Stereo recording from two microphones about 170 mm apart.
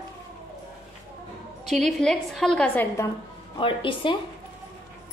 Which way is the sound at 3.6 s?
30° left (ahead or behind).